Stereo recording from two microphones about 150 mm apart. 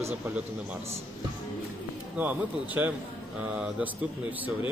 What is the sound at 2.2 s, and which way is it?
Speech, 10° right (ahead or behind).